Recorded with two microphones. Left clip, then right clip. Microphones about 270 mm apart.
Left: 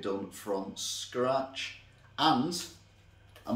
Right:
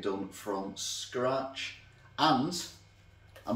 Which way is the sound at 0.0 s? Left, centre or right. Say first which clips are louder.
Even; centre.